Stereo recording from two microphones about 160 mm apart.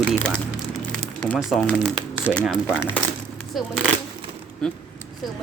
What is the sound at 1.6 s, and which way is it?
Speech, 10° left (ahead or behind).